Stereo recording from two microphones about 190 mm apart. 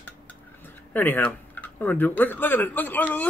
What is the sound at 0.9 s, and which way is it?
Speech, 10° left (ahead or behind).